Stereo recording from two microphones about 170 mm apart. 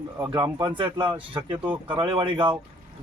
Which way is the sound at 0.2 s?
25° right (ahead or behind).